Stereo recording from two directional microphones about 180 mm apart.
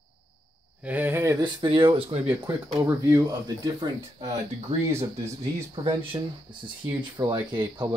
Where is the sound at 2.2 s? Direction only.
15° right (ahead or behind).